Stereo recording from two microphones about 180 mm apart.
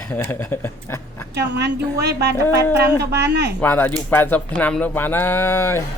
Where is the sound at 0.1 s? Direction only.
10° left (ahead or behind).